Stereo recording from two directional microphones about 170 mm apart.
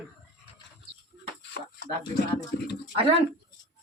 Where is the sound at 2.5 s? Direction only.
80° left.